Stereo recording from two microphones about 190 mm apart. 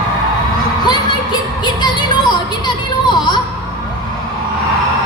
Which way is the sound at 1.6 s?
20° left (ahead or behind).